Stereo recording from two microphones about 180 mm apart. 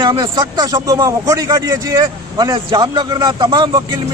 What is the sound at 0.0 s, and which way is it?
A man's voice, 25° right (ahead or behind).